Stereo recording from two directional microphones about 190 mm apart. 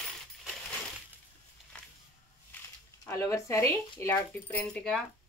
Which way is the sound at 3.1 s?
15° left (ahead or behind).